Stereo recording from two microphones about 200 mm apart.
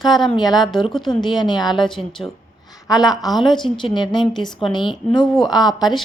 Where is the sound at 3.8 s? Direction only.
25° left (ahead or behind).